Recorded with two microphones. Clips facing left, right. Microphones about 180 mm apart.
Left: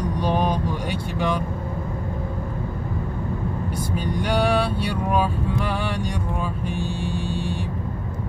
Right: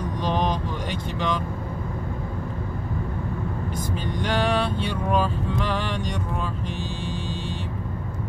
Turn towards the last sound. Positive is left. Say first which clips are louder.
# left 4 dB
turn(degrees=-20)  # may be behind; listen again after turning